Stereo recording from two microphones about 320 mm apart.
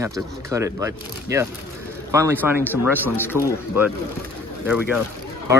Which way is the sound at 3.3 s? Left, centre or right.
Centre.